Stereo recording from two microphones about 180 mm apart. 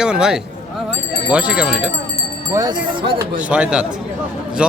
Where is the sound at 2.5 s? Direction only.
20° right (ahead or behind).